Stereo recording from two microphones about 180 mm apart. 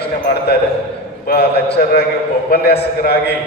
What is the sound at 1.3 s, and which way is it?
A man's voice, 65° left (ahead or behind).